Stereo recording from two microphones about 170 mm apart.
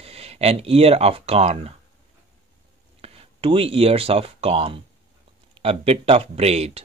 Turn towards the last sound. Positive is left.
turn(degrees=-40)  # may be behind; listen again after turning